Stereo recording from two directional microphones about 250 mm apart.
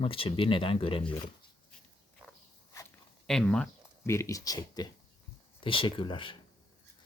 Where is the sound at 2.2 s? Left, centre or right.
Centre.